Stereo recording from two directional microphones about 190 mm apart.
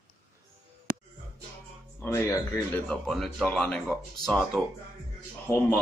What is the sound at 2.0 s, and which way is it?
Speech, 15° left (ahead or behind).